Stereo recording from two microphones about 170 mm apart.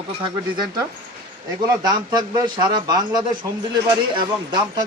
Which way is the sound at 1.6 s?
25° right (ahead or behind).